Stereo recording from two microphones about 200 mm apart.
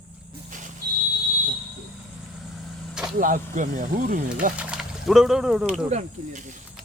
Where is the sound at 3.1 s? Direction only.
45° right (ahead or behind).